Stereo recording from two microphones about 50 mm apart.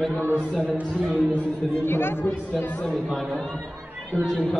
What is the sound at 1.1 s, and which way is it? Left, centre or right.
Speech, left.